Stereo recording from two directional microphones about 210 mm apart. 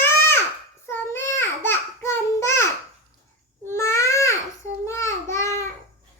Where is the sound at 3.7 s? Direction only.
15° left (ahead or behind).